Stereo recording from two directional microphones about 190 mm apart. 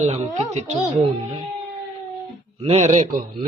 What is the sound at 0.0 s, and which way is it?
Speech, 35° right (ahead or behind).